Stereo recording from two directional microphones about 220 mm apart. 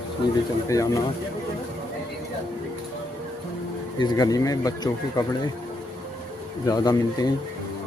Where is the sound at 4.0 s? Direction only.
15° left (ahead or behind).